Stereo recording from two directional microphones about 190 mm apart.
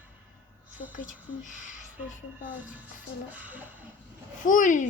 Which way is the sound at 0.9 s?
40° left (ahead or behind).